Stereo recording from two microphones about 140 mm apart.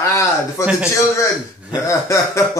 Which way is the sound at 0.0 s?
20° left (ahead or behind).